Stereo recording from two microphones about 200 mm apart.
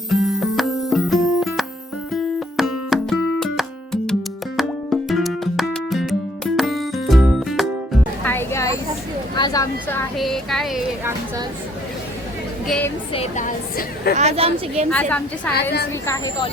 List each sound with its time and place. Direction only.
0.1 s music: centre (ahead or behind); by 8.8 s 15° left (ahead or behind)
9.3 s a sound: 20° left (ahead or behind)
10.2 s speech: centre (ahead or behind)
12.6 s speech: 5° left (ahead or behind)
13.1 s a woman's voice: 35° left (ahead or behind)
14.2 s a woman's voice: 30° right (ahead or behind)
14.8 s a woman's voice: 5° left (ahead or behind)
16.0 s speech: 20° left (ahead or behind)